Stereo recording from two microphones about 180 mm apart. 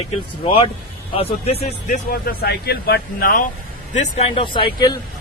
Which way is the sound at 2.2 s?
60° left (ahead or behind).